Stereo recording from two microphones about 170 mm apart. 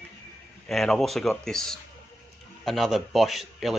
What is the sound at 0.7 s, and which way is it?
Speech, centre (ahead or behind).